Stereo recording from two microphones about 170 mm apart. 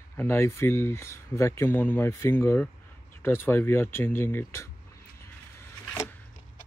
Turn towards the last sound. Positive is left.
turn(degrees=15)  # may be behind; listen again after turning